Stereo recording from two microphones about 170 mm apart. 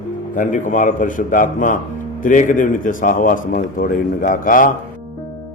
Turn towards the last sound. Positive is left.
turn(degrees=55)  # may be behind; listen again after turning